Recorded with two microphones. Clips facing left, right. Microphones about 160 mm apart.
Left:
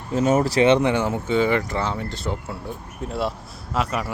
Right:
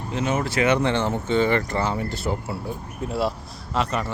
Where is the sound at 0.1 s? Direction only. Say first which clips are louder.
Left 6 dB; 40° left (ahead or behind).